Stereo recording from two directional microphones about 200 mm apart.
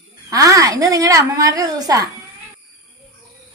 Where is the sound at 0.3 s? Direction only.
15° right (ahead or behind).